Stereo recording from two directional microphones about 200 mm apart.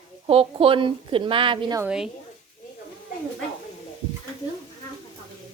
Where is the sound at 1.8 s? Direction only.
5° right (ahead or behind).